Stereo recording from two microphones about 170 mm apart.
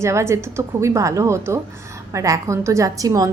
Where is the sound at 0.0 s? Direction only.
15° right (ahead or behind).